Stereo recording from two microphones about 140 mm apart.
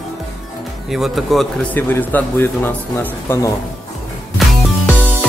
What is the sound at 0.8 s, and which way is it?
Speech, centre (ahead or behind).